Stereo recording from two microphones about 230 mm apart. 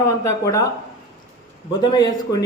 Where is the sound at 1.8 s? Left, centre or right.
Centre.